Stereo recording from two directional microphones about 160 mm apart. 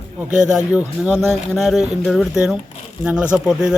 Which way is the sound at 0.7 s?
5° right (ahead or behind).